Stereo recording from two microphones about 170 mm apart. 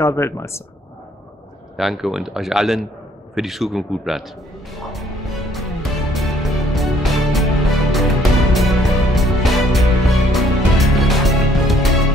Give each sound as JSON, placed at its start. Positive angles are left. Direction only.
{"t": 0.0, "sound": "speech", "side_deg": 15}
{"t": 1.8, "sound": "speech", "side_deg": 0}
{"t": 3.3, "sound": "music", "side_deg": 0}